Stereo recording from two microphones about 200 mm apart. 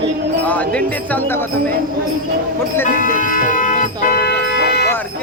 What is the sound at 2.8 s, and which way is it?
Music, 40° left (ahead or behind).